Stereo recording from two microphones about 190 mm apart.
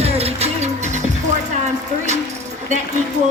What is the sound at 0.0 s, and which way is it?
Music, 35° right (ahead or behind).